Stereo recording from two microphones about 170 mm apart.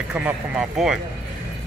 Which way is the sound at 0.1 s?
10° right (ahead or behind).